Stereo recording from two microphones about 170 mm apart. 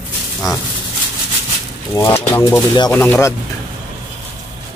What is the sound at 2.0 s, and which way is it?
A man's voice, 15° left (ahead or behind).